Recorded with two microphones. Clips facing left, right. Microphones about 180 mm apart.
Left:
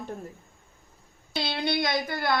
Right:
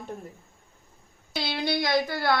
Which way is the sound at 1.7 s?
20° left (ahead or behind).